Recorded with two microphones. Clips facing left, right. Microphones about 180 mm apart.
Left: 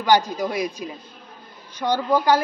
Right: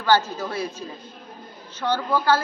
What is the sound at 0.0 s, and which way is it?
A woman's voice, 15° left (ahead or behind).